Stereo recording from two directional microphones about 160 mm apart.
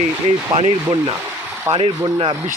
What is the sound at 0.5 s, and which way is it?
Speech, 35° right (ahead or behind).